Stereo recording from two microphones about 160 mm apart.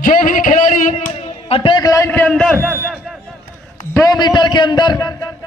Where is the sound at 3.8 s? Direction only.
20° left (ahead or behind).